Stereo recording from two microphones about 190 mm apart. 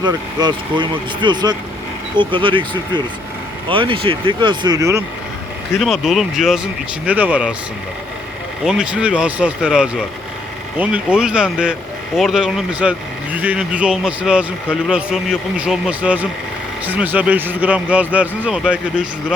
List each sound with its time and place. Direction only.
0.0 s speech: 20° right (ahead or behind)
5.8 s speech: centre (ahead or behind)
8.6 s speech: 5° right (ahead or behind)